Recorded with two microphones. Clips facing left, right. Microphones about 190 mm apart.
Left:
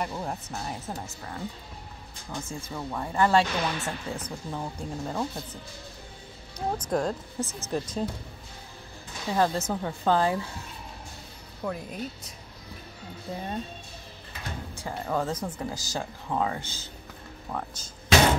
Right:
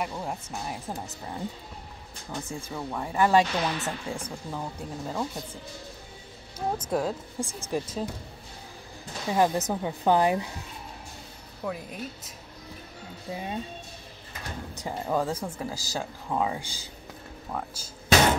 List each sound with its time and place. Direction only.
0.0 s speech: 5° right (ahead or behind)
2.3 s speech: 5° right (ahead or behind)
4.5 s speech: centre (ahead or behind)
6.8 s speech: 5° right (ahead or behind)
9.3 s speech: 15° right (ahead or behind)
11.6 s speech: centre (ahead or behind)
13.3 s speech: 10° right (ahead or behind)
14.8 s speech: 10° right (ahead or behind)